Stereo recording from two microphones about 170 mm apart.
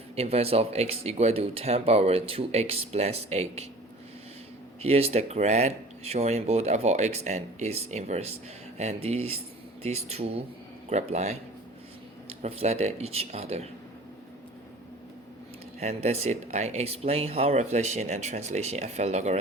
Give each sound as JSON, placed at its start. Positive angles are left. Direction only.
{"t": 0.2, "sound": "speech", "side_deg": -35}
{"t": 4.8, "sound": "speech", "side_deg": -35}
{"t": 15.8, "sound": "speech", "side_deg": -40}